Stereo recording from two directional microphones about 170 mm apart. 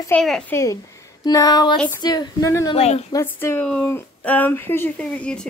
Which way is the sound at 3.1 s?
15° left (ahead or behind).